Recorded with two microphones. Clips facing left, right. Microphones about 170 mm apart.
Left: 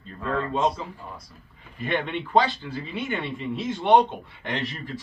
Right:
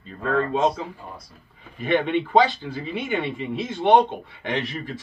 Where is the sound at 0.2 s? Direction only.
60° right (ahead or behind).